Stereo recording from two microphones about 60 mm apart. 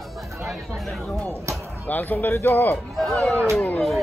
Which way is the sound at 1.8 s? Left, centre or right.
Left.